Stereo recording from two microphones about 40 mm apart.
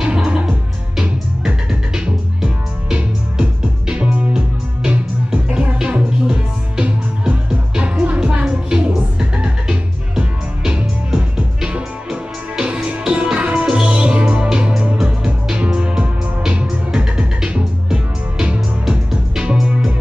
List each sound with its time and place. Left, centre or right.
0.0 s music: right